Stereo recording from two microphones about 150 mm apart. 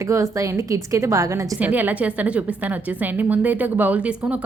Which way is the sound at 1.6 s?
10° right (ahead or behind).